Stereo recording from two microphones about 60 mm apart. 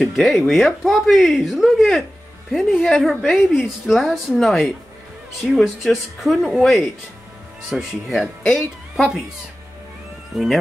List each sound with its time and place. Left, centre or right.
0.0 s a woman's voice: centre
2.5 s a woman's voice: centre
8.1 s a woman's voice: centre
10.3 s a woman's voice: centre